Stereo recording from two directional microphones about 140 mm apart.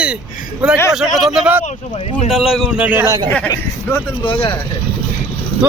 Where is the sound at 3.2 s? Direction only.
15° left (ahead or behind).